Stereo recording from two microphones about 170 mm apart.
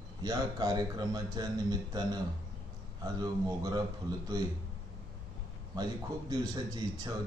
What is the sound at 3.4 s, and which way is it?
Speech, 25° right (ahead or behind).